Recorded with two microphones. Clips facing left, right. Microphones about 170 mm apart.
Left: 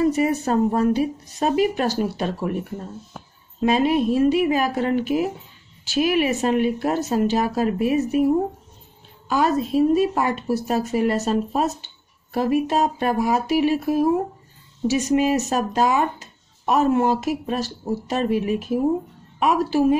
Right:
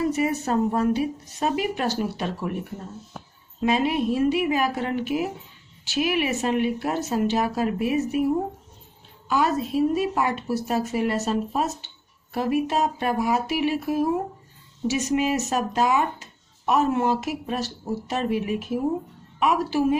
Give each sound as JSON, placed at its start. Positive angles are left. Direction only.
{"t": 0.1, "sound": "speech", "side_deg": 35}
{"t": 3.6, "sound": "speech", "side_deg": 40}
{"t": 9.3, "sound": "speech", "side_deg": 40}
{"t": 14.9, "sound": "speech", "side_deg": 35}